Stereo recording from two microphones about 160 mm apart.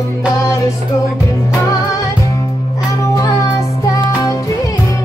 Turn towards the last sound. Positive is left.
turn(degrees=20)  # may be behind; listen again after turning